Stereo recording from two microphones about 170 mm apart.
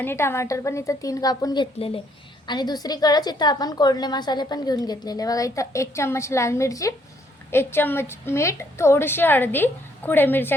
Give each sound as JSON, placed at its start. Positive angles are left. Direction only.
{"t": 0.0, "sound": "a woman's voice", "side_deg": 15}